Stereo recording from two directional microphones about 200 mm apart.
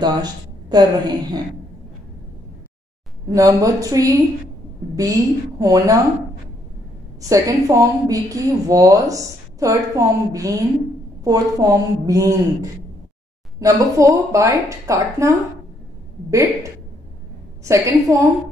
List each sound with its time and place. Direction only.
0.0 s a woman's voice: 20° right (ahead or behind)
3.3 s a woman's voice: 15° right (ahead or behind)
7.2 s a woman's voice: 15° right (ahead or behind)
13.6 s a woman's voice: 15° right (ahead or behind)